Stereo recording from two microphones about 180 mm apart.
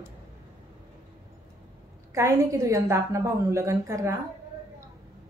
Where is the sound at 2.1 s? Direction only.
15° right (ahead or behind).